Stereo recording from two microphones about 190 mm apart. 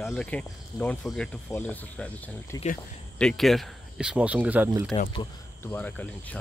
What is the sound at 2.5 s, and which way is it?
Speech, 20° left (ahead or behind).